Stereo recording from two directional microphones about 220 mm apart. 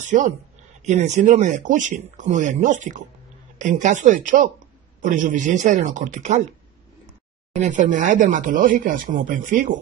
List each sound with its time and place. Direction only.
0.0 s speech: 35° right (ahead or behind)
7.5 s speech: 35° right (ahead or behind)